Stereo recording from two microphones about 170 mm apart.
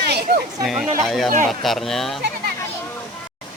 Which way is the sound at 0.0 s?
70° right (ahead or behind).